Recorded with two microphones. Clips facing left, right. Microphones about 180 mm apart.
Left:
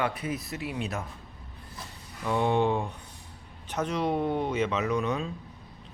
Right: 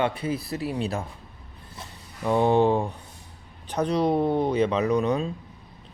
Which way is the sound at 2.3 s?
35° right (ahead or behind).